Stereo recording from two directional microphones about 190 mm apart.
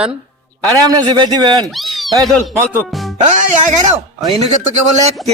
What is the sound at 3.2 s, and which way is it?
Speech, 35° right (ahead or behind).